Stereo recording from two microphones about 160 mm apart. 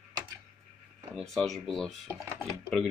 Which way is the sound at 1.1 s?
Centre (ahead or behind).